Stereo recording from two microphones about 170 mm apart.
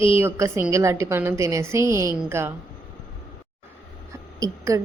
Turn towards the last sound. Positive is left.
turn(degrees=-20)  # may be behind; listen again after turning